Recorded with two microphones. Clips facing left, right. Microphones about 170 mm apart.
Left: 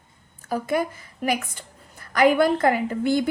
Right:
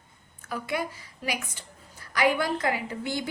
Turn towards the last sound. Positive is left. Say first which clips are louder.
# left 10 dB
turn(degrees=55)  # may be behind; listen again after turning